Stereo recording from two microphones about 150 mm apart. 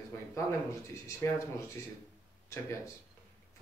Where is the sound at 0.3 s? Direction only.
20° left (ahead or behind).